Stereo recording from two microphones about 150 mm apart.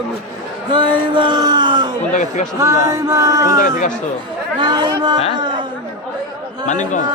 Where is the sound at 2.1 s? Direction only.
55° left (ahead or behind).